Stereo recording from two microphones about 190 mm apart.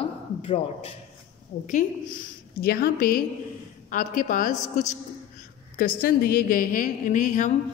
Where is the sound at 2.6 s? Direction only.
55° left (ahead or behind).